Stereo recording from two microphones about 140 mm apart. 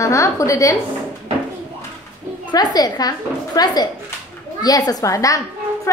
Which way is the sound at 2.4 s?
30° left (ahead or behind).